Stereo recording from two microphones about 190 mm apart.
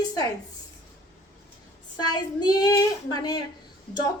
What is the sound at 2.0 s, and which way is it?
Child singing, 20° left (ahead or behind).